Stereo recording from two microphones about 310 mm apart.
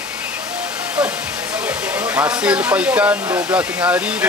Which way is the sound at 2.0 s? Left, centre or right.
Centre.